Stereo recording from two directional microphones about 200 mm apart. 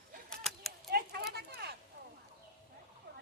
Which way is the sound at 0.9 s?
50° right (ahead or behind).